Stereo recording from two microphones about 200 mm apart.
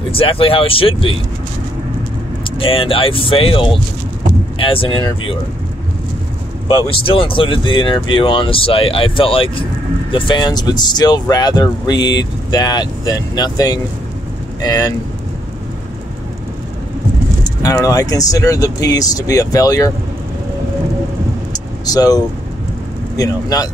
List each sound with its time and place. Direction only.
0.1 s speech: 25° left (ahead or behind)
2.6 s speech: 25° left (ahead or behind)
6.9 s speech: 25° left (ahead or behind)
17.4 s speech: 15° left (ahead or behind)
21.8 s speech: 20° left (ahead or behind)